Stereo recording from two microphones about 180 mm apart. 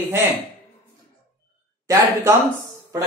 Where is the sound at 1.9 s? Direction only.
15° right (ahead or behind).